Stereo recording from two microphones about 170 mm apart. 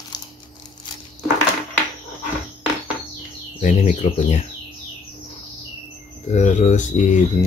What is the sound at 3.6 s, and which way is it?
Speech, 45° left (ahead or behind).